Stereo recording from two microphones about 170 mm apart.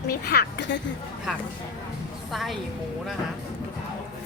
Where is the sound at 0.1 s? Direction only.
70° left (ahead or behind).